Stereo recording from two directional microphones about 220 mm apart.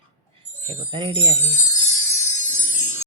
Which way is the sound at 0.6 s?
20° right (ahead or behind).